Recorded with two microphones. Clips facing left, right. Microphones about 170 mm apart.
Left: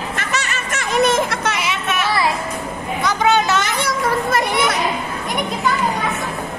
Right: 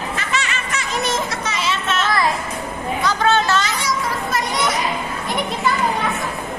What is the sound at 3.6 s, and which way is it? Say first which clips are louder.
Children playing: left 2 dB; 55° left (ahead or behind).